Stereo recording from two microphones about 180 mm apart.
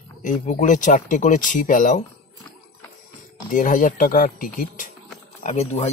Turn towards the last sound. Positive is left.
turn(degrees=40)  # may be behind; listen again after turning